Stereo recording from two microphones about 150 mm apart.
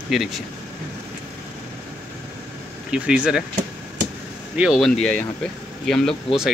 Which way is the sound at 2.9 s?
5° right (ahead or behind).